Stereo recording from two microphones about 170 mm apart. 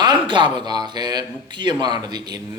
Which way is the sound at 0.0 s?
25° right (ahead or behind).